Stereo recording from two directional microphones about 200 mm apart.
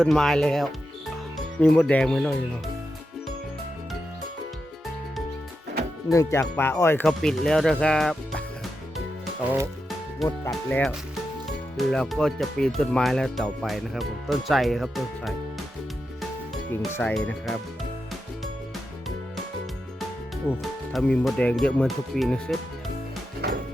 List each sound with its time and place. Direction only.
0.0 s speech: centre (ahead or behind)
6.1 s speech: 15° left (ahead or behind)
10.2 s speech: 10° left (ahead or behind)
16.7 s speech: 10° left (ahead or behind)
20.6 s speech: 5° left (ahead or behind)
23.4 s music: 50° right (ahead or behind)